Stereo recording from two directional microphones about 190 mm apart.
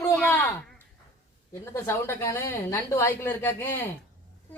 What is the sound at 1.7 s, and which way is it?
A woman's voice, 15° left (ahead or behind).